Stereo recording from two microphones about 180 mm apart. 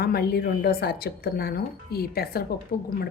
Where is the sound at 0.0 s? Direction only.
60° left (ahead or behind).